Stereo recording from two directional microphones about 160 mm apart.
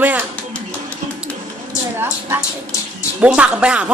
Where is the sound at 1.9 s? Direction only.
15° right (ahead or behind).